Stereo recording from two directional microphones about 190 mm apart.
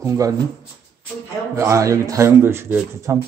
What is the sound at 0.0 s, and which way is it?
Speech, 15° right (ahead or behind).